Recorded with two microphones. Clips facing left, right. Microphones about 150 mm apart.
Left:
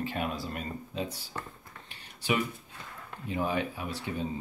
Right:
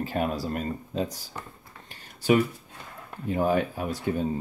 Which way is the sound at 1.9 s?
45° right (ahead or behind).